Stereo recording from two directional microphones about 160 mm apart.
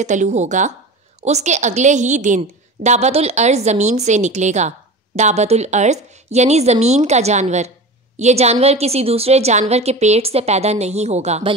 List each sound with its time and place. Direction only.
0.0 s a woman's voice: 50° right (ahead or behind)